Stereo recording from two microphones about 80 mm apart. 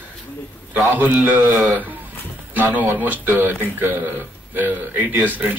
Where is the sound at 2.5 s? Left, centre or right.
Right.